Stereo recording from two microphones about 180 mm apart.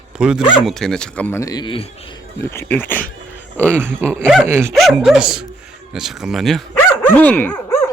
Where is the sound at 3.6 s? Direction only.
10° right (ahead or behind).